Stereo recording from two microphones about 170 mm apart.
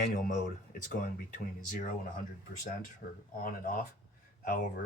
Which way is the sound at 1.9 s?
55° left (ahead or behind).